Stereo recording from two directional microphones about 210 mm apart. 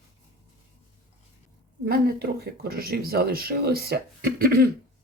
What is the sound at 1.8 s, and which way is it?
Speech, 45° right (ahead or behind).